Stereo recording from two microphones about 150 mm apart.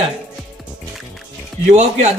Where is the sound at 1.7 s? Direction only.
50° right (ahead or behind).